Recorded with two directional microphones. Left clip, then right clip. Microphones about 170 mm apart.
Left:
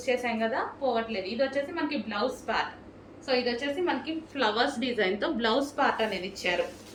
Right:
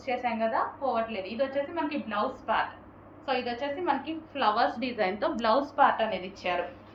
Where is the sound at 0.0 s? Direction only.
15° left (ahead or behind).